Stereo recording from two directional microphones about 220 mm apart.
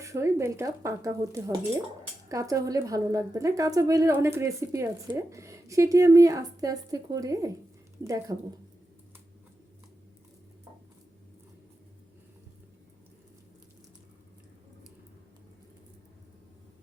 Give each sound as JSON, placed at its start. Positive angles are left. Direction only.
{"t": 0.0, "sound": "speech", "side_deg": -15}